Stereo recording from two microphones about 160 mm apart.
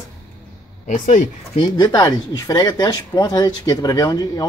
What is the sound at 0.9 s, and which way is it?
Speech, 50° left (ahead or behind).